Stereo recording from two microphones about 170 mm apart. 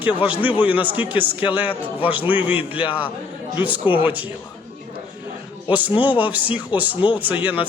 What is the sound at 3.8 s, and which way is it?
Speech, 30° left (ahead or behind).